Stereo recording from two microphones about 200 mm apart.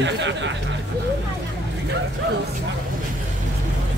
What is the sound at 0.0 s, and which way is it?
Speech, 65° right (ahead or behind).